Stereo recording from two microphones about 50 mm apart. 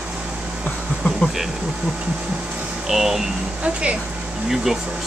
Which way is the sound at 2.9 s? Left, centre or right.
Centre.